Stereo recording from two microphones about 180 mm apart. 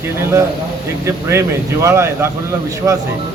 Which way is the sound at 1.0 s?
15° right (ahead or behind).